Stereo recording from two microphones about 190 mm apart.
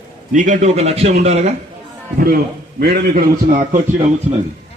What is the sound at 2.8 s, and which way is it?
A man's voice, 55° right (ahead or behind).